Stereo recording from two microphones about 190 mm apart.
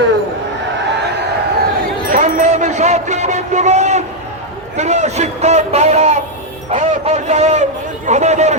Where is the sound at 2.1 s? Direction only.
40° right (ahead or behind).